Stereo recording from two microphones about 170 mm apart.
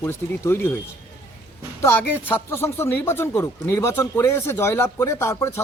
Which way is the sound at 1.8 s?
15° left (ahead or behind).